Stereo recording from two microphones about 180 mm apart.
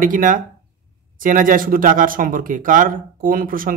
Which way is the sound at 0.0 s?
50° right (ahead or behind).